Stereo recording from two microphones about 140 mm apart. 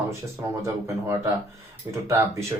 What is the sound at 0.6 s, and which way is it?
Speech, 20° right (ahead or behind).